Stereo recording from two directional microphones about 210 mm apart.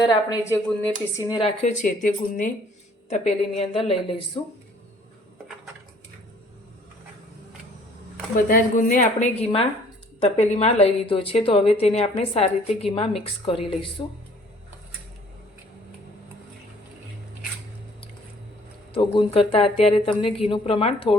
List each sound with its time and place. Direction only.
0.1 s a woman's voice: 15° left (ahead or behind); by 2.5 s 40° left (ahead or behind)
3.6 s a woman's voice: 25° left (ahead or behind)
8.4 s a woman's voice: 40° left (ahead or behind)
18.9 s a woman's voice: 25° left (ahead or behind)